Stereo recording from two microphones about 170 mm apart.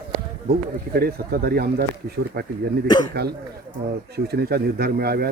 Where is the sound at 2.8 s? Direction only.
25° left (ahead or behind).